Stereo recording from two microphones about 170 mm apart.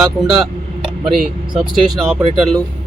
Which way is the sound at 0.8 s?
5° right (ahead or behind).